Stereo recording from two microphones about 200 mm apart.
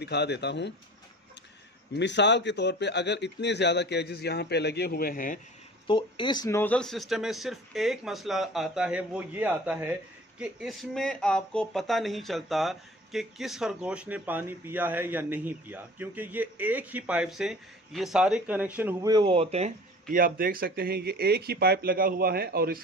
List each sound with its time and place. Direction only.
0.0 s a man's voice: 55° left (ahead or behind)
2.0 s a man's voice: 60° left (ahead or behind); by 5.4 s 45° left (ahead or behind)
5.9 s speech: 25° left (ahead or behind); by 22.8 s 50° right (ahead or behind)